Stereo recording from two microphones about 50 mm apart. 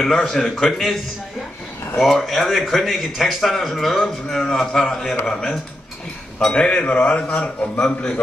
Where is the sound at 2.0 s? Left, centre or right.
Centre.